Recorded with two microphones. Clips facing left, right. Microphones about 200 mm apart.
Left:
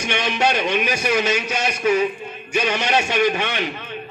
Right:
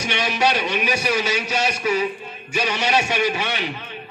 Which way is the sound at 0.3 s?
35° right (ahead or behind).